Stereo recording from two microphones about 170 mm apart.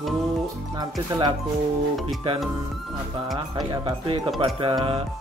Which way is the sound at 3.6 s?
25° right (ahead or behind).